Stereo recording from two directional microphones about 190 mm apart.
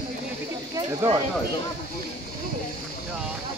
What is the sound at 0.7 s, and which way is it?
Speech, 25° right (ahead or behind).